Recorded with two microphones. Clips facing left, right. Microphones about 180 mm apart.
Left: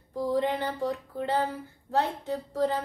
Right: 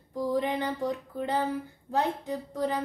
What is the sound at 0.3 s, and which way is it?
A woman's voice, 15° right (ahead or behind).